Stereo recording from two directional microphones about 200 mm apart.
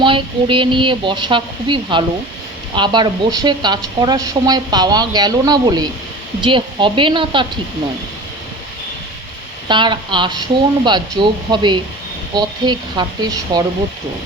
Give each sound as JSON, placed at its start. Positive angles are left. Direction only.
{"t": 0.0, "sound": "speech", "side_deg": -25}
{"t": 9.6, "sound": "speech", "side_deg": -25}